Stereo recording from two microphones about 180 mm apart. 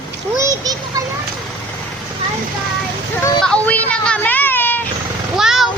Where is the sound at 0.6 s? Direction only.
20° right (ahead or behind).